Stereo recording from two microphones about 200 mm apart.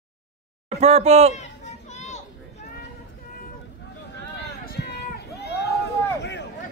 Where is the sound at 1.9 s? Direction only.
35° left (ahead or behind).